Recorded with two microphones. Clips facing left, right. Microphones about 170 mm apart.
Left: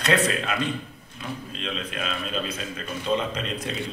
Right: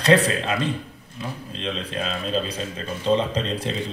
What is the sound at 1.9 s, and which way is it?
Speech, 35° right (ahead or behind).